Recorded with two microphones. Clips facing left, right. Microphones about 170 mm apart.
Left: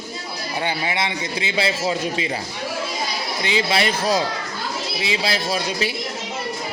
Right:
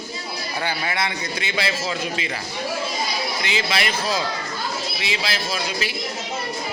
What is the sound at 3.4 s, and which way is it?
Speech, 30° left (ahead or behind).